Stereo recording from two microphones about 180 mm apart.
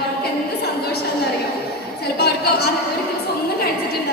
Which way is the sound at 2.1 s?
65° left (ahead or behind).